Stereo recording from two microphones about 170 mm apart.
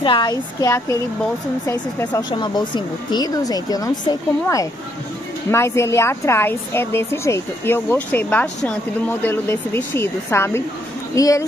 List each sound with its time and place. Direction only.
0.0 s speech: 25° left (ahead or behind)
2.4 s speech: 25° left (ahead or behind)